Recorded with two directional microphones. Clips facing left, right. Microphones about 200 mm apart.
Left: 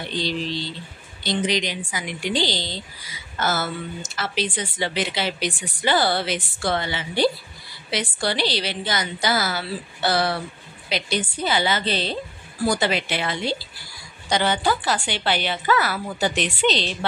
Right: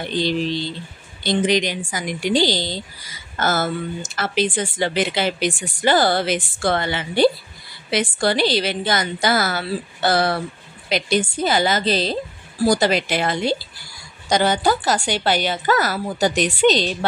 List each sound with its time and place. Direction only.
1.2 s speech: 50° right (ahead or behind)